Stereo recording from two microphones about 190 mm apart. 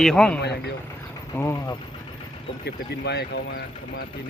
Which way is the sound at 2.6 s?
60° left (ahead or behind).